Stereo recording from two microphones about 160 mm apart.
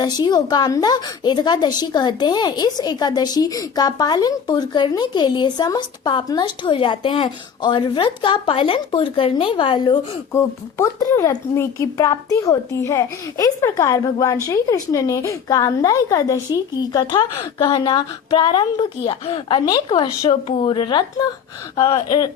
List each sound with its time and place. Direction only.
0.0 s a woman's voice: 25° left (ahead or behind)
10.3 s a woman's voice: 15° left (ahead or behind)